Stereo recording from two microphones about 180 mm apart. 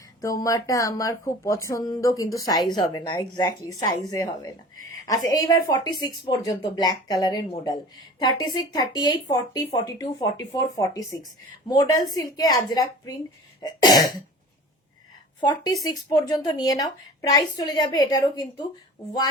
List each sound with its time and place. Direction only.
0.2 s speech: 20° left (ahead or behind)
15.4 s speech: 20° left (ahead or behind)